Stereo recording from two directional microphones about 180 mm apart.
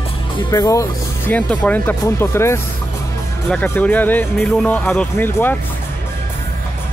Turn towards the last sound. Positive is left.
turn(degrees=10)  # may be behind; listen again after turning